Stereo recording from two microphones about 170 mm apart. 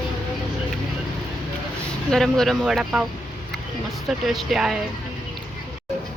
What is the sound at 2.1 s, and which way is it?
Speech, centre (ahead or behind).